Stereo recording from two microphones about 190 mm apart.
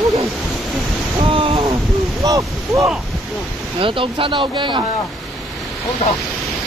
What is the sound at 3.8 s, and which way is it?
Speech, 25° right (ahead or behind).